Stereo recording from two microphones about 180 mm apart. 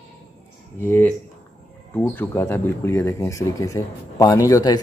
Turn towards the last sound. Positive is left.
turn(degrees=20)  # may be behind; listen again after turning